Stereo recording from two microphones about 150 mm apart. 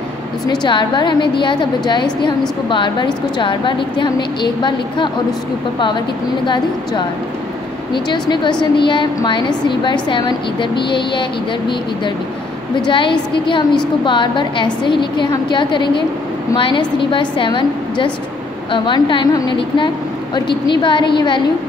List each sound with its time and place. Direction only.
0.7 s a woman's voice: 30° left (ahead or behind)
6.4 s a woman's voice: 30° left (ahead or behind)
12.8 s a woman's voice: 30° left (ahead or behind)